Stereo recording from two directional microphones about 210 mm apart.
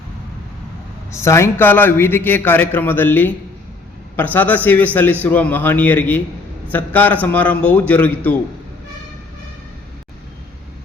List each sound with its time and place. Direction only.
1.1 s a man's voice: 15° left (ahead or behind)